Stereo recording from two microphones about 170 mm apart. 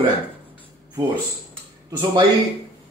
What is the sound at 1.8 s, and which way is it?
Speech, 25° right (ahead or behind).